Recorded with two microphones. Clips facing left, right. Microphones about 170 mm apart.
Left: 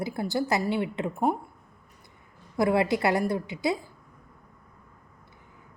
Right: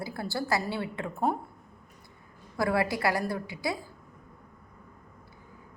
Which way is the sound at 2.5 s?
20° left (ahead or behind).